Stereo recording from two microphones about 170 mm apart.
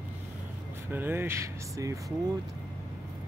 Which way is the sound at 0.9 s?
10° right (ahead or behind).